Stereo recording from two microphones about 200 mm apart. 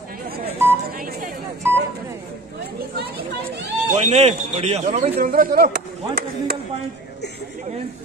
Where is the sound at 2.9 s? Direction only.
55° right (ahead or behind).